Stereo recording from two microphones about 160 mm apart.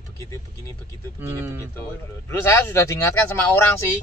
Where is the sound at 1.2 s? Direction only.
15° right (ahead or behind).